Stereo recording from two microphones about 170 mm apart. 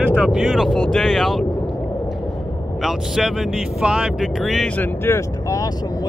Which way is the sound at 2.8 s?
Centre (ahead or behind).